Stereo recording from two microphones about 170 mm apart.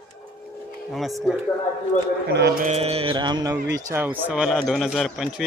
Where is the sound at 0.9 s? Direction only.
Centre (ahead or behind).